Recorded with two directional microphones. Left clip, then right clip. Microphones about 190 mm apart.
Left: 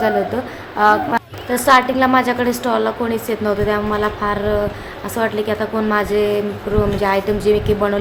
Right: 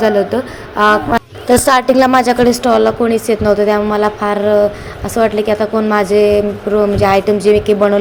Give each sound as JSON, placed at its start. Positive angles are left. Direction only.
{"t": 0.3, "sound": "a woman's voice", "side_deg": -20}
{"t": 1.5, "sound": "a woman's voice", "side_deg": -35}